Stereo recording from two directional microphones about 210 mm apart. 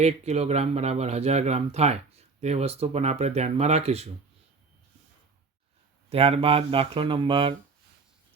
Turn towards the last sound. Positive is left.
turn(degrees=-25)  # may be behind; listen again after turning